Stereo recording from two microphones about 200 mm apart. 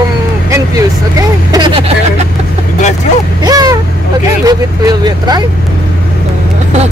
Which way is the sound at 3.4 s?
20° right (ahead or behind).